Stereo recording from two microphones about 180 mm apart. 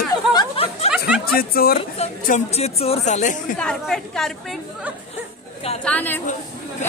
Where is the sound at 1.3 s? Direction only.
55° left (ahead or behind).